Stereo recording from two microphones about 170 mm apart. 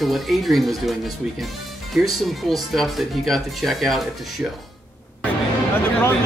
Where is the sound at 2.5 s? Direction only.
Centre (ahead or behind).